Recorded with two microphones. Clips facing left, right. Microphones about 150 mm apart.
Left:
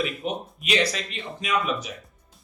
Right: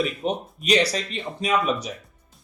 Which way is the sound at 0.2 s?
40° right (ahead or behind).